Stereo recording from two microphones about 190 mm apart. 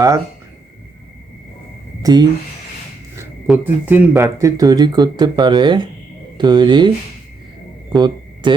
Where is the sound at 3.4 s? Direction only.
5° right (ahead or behind); by 6.9 s 25° right (ahead or behind).